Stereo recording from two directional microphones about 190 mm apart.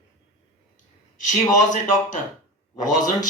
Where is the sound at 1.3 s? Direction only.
40° left (ahead or behind).